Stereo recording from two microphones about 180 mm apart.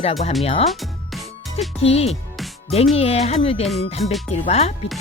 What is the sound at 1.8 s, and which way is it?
Speech, 35° left (ahead or behind).